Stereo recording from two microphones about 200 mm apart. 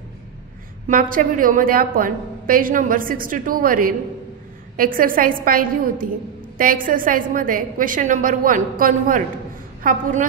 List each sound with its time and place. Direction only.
0.8 s a woman's voice: 45° right (ahead or behind)